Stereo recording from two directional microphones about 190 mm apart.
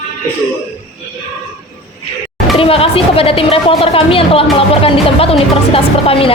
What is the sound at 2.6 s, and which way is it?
A woman's voice, 30° left (ahead or behind).